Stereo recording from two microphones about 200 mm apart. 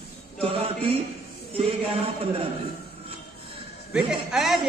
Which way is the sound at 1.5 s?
30° right (ahead or behind).